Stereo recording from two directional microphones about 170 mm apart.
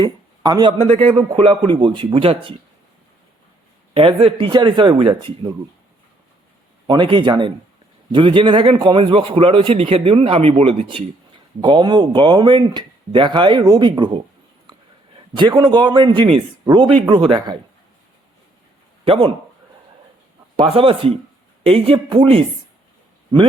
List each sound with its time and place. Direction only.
0.0 s speech: 25° right (ahead or behind)
3.9 s a man's voice: 30° right (ahead or behind)
6.8 s a man's voice: 25° right (ahead or behind)
15.4 s speech: 30° right (ahead or behind)
19.0 s speech: 35° right (ahead or behind)
20.6 s a man's voice: 35° right (ahead or behind)